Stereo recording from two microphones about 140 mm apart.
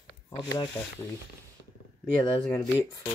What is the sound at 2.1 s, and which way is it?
Speech, 10° left (ahead or behind).